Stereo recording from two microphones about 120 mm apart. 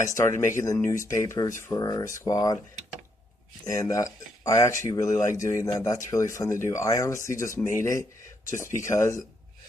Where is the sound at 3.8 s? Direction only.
25° left (ahead or behind).